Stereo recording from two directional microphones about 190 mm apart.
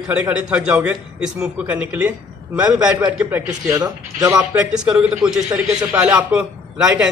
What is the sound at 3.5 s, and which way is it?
Speech, 20° right (ahead or behind).